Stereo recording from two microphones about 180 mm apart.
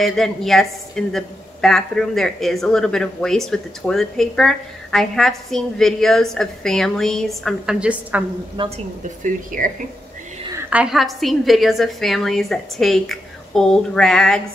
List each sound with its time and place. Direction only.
0.0 s a woman's voice: centre (ahead or behind)
8.5 s a woman's voice: 35° right (ahead or behind)
10.5 s a woman's voice: 5° right (ahead or behind)